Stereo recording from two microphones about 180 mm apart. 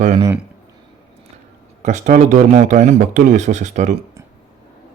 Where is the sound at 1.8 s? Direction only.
40° right (ahead or behind).